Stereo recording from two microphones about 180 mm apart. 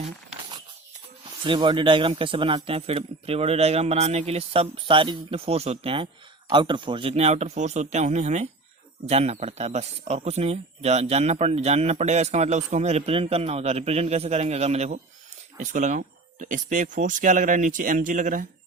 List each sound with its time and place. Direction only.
1.5 s speech: 25° right (ahead or behind); by 18.4 s 45° right (ahead or behind)